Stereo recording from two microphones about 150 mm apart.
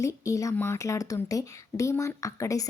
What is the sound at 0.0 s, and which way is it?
Speech, 20° left (ahead or behind).